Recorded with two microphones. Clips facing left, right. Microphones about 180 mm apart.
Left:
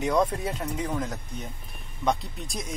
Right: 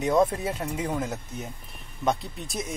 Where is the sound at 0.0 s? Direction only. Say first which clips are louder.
Right 2 dB; 5° right (ahead or behind).